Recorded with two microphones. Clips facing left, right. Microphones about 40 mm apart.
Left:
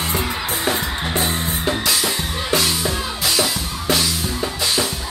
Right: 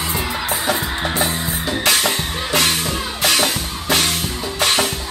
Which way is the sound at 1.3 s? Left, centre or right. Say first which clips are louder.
Even; left.